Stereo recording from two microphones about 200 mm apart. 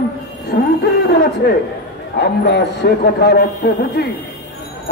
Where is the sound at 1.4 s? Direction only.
55° left (ahead or behind).